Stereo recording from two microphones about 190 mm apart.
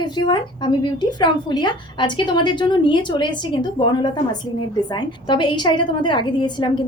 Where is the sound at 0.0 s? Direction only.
25° left (ahead or behind).